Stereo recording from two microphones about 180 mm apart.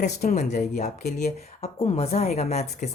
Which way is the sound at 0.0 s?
40° left (ahead or behind).